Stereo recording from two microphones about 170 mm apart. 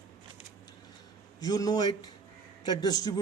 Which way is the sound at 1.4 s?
20° left (ahead or behind).